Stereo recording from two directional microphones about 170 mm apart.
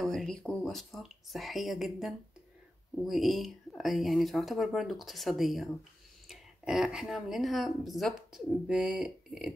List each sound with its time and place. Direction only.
0.0 s a woman's voice: centre (ahead or behind)